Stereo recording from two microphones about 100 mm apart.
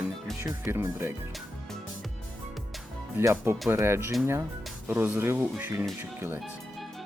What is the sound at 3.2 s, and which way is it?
Speech, 30° right (ahead or behind).